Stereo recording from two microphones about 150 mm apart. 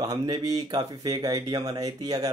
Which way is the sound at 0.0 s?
25° right (ahead or behind).